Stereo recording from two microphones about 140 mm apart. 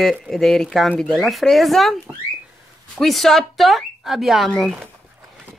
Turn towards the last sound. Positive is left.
turn(degrees=0)  # may be behind; listen again after turning